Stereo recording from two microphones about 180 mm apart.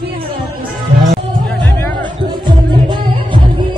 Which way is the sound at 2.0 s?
25° right (ahead or behind).